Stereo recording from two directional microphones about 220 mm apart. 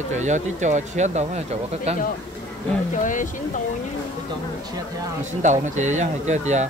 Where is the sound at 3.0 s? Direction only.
35° left (ahead or behind).